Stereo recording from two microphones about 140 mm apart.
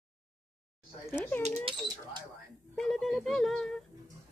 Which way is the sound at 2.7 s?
Centre (ahead or behind).